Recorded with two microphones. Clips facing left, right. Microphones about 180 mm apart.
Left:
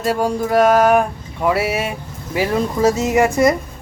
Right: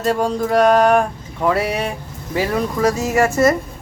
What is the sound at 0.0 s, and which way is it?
Speech, 5° left (ahead or behind).